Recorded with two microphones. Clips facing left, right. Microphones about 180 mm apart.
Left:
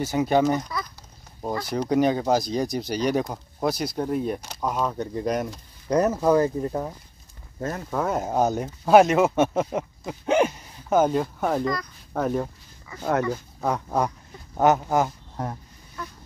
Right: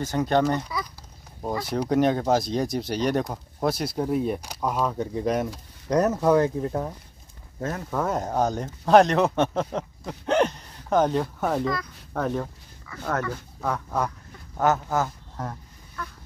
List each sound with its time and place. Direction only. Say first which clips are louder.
0.0 s speech: left 2 dB; 10° left (ahead or behind)